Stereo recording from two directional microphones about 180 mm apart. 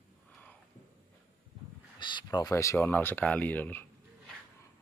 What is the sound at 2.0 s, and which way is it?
Speech, 25° left (ahead or behind).